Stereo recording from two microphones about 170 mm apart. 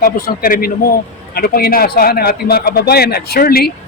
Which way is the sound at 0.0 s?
55° left (ahead or behind).